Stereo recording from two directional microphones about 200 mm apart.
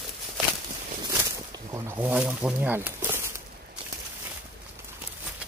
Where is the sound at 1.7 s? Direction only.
15° right (ahead or behind).